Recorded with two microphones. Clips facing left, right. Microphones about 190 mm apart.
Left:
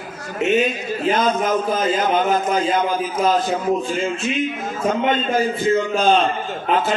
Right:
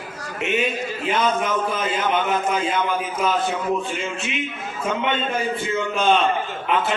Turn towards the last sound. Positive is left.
turn(degrees=35)  # may be behind; listen again after turning